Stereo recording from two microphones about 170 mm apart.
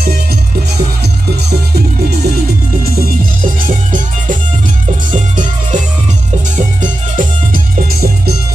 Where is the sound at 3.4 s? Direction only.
50° right (ahead or behind).